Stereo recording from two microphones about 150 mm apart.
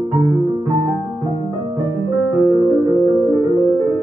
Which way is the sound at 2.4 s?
20° right (ahead or behind).